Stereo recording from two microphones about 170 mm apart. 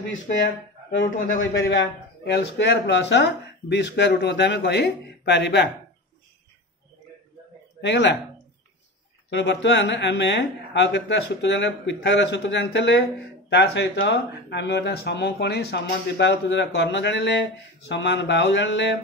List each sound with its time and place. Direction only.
1.5 s a man's voice: 80° left
7.8 s a man's voice: 90° left
9.3 s a man's voice: 90° left